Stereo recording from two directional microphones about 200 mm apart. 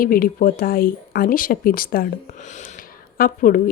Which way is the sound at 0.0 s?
45° left (ahead or behind).